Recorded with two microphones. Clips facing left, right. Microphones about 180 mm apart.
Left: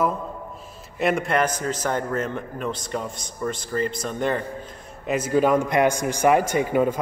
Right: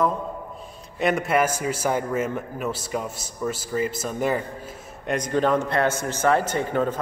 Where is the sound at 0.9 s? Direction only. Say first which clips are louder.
Even; centre (ahead or behind).